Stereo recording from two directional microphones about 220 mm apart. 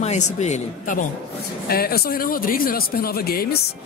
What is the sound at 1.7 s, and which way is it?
Speech, 45° left (ahead or behind).